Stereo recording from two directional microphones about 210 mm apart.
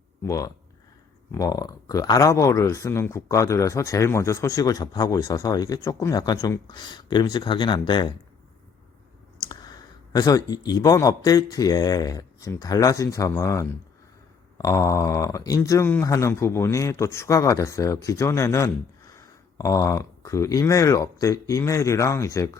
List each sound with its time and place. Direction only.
0.3 s speech: 15° left (ahead or behind)
9.4 s speech: 20° left (ahead or behind)